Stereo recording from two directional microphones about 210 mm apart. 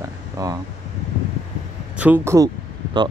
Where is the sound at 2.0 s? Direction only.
10° right (ahead or behind).